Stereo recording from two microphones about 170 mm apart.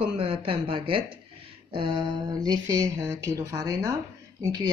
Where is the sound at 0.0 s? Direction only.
30° right (ahead or behind).